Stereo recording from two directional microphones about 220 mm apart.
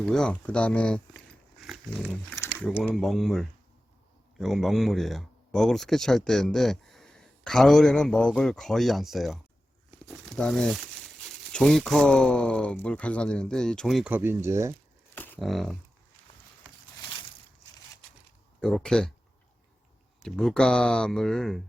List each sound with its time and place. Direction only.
0.0 s speech: 5° left (ahead or behind)
2.4 s a sound: 10° left (ahead or behind)
2.6 s speech: centre (ahead or behind)
15.1 s speech: 10° left (ahead or behind)
18.6 s speech: centre (ahead or behind)
20.1 s speech: centre (ahead or behind)